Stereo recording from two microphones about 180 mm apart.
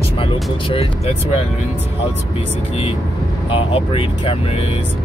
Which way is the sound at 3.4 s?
30° left (ahead or behind).